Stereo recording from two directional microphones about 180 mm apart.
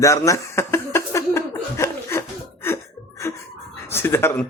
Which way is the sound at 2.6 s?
15° left (ahead or behind).